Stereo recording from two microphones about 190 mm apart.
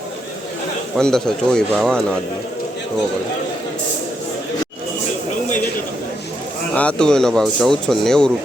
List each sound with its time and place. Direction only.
0.9 s speech: 5° left (ahead or behind)
6.7 s speech: 5° left (ahead or behind)